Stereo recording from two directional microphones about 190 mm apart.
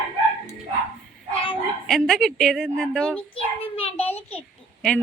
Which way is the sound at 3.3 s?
30° left (ahead or behind).